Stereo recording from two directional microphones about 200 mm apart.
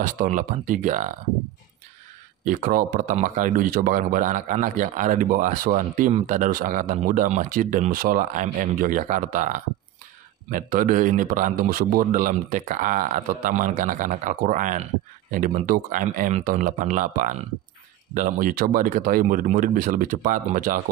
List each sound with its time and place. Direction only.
0.0 s speech: 40° right (ahead or behind)
2.4 s speech: 40° right (ahead or behind)